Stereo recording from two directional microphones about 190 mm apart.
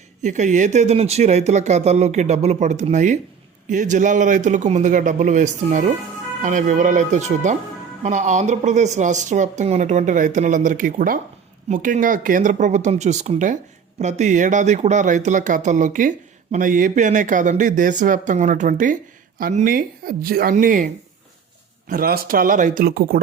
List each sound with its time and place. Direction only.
0.2 s speech: 40° right (ahead or behind)